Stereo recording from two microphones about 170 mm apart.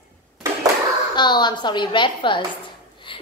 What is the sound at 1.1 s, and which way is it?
A woman's voice, 25° left (ahead or behind).